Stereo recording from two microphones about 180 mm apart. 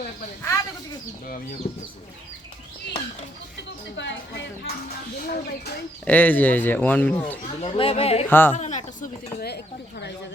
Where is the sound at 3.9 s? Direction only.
80° left.